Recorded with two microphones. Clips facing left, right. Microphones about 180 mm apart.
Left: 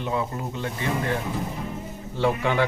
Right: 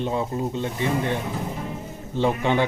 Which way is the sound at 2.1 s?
20° right (ahead or behind).